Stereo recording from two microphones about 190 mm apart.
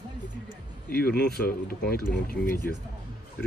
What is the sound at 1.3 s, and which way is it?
Speech, 55° left (ahead or behind).